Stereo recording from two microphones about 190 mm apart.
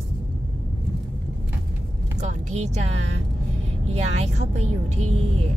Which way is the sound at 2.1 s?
40° right (ahead or behind).